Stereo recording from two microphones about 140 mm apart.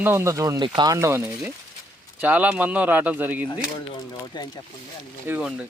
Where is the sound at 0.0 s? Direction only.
15° right (ahead or behind).